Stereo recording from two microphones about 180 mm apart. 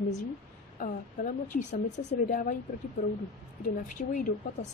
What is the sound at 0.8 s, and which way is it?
A woman's voice, 45° left (ahead or behind).